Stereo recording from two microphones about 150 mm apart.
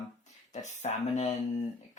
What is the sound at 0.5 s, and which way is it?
Speech, 50° left (ahead or behind).